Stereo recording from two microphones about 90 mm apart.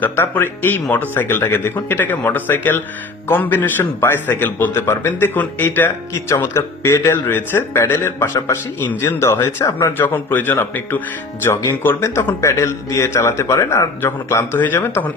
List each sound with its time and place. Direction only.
0.0 s a man's voice: 25° left (ahead or behind)